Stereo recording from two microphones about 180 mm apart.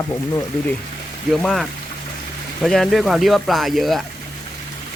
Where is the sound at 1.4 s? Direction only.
Centre (ahead or behind).